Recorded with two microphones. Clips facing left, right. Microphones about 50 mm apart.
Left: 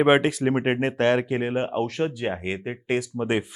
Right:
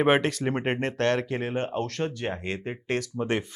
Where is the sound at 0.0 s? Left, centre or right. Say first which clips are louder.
Left 4 dB; centre.